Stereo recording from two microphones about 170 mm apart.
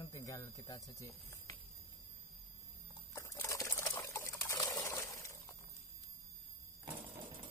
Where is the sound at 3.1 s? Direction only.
20° left (ahead or behind).